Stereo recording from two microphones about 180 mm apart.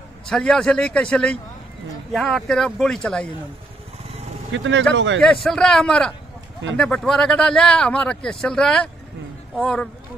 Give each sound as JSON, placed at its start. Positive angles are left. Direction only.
{"t": 0.3, "sound": "speech", "side_deg": 5}
{"t": 4.5, "sound": "a man's voice", "side_deg": -90}
{"t": 5.4, "sound": "speech", "side_deg": 5}